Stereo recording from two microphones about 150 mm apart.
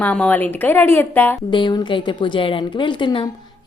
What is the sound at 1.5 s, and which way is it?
A woman's voice, 30° left (ahead or behind).